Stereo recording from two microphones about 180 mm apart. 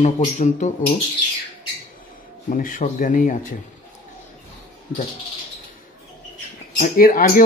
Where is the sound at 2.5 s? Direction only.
50° left (ahead or behind).